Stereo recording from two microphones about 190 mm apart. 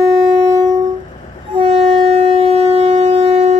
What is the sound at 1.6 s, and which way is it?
Shofar, 30° right (ahead or behind).